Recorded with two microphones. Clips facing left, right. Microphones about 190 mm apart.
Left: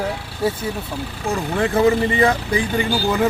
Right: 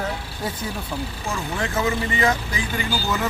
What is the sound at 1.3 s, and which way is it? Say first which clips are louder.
Speech: left 7 dB; 35° left (ahead or behind).